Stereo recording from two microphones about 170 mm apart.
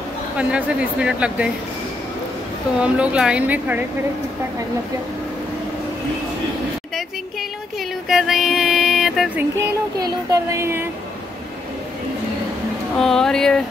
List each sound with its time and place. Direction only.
0.4 s speech: 5° right (ahead or behind)
2.8 s speech: 5° right (ahead or behind)
8.1 s music: centre (ahead or behind)
9.4 s speech: 20° right (ahead or behind)
12.9 s speech: centre (ahead or behind)